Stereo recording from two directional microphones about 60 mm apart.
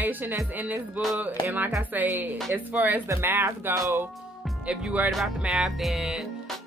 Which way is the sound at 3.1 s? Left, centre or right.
Right.